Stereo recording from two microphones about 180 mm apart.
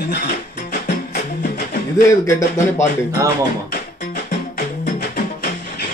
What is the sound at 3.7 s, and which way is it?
Music, 50° left (ahead or behind).